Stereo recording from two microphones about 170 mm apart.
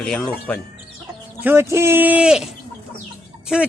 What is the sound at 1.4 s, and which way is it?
Speech, 15° right (ahead or behind).